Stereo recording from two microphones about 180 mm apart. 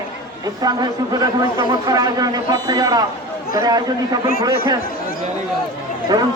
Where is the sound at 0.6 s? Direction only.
20° right (ahead or behind).